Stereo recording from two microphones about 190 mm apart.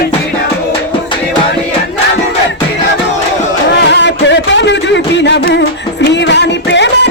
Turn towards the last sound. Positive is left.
turn(degrees=65)  # may be behind; listen again after turning